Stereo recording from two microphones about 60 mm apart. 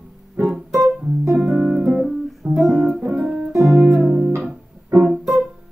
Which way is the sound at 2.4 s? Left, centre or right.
Centre.